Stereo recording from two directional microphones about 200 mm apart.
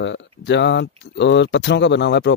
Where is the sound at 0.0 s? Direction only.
65° left (ahead or behind).